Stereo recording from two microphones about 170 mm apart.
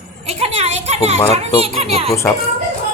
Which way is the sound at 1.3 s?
35° right (ahead or behind).